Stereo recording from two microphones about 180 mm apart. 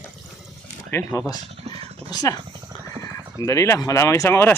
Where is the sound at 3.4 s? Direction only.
15° left (ahead or behind).